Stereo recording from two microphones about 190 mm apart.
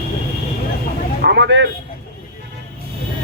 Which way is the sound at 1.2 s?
65° right (ahead or behind).